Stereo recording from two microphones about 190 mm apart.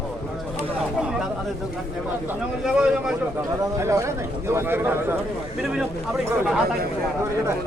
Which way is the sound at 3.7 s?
15° right (ahead or behind).